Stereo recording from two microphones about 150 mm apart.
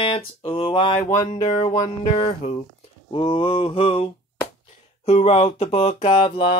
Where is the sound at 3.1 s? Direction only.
35° left (ahead or behind).